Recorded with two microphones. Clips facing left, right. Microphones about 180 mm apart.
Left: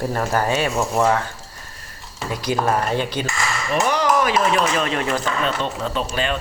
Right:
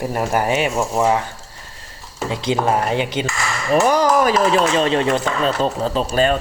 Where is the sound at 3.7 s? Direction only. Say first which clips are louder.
Right 5 dB; 40° right (ahead or behind).